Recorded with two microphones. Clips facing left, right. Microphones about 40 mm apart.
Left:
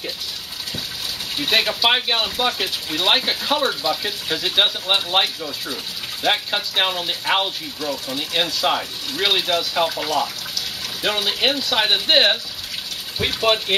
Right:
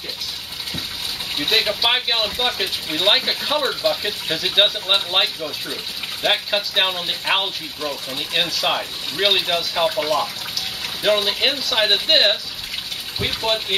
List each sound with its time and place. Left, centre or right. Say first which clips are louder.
1.5 s speech: left 1 dB; centre
7.8 s speech: left 1 dB; centre
8.4 s speech: even; centre
13.4 s speech: left 4 dB; left